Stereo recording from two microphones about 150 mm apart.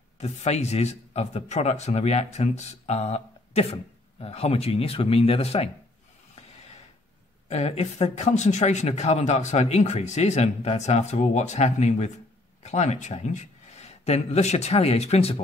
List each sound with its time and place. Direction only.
0.2 s a man's voice: 45° left (ahead or behind)
7.4 s a man's voice: 45° left (ahead or behind)